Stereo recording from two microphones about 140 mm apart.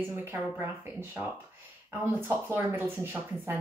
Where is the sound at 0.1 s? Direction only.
15° right (ahead or behind).